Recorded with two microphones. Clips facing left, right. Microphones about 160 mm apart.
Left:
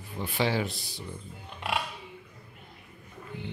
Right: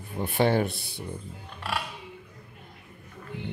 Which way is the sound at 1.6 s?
15° left (ahead or behind).